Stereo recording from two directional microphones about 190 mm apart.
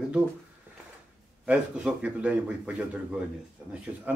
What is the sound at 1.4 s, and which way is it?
A man's voice, 5° right (ahead or behind).